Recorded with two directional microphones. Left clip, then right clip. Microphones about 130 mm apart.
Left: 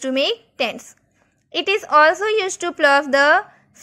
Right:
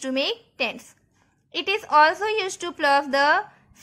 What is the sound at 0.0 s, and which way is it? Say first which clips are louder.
A woman's voice: left 5 dB; 30° left (ahead or behind).